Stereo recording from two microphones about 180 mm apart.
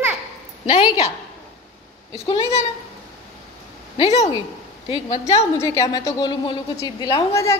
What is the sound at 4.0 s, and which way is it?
Speech, 35° left (ahead or behind).